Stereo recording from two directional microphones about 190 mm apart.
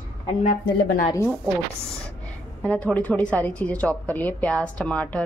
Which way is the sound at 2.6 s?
5° left (ahead or behind).